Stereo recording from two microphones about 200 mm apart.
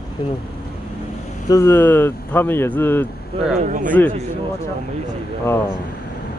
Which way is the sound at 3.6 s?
40° right (ahead or behind).